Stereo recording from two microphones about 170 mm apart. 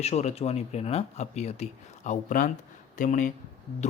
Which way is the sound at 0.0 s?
40° left (ahead or behind).